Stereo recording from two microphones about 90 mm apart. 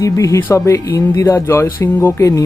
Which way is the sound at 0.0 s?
35° left (ahead or behind).